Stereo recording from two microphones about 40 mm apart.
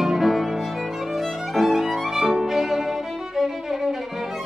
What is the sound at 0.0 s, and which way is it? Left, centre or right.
Violin, centre.